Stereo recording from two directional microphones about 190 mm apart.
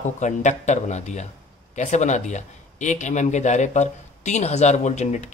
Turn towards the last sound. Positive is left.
turn(degrees=35)  # may be behind; listen again after turning